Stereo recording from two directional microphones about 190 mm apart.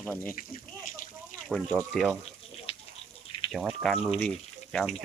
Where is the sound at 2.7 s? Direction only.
30° left (ahead or behind).